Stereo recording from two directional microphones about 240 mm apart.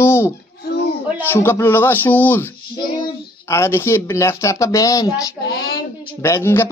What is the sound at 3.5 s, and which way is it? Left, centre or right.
Speech, centre.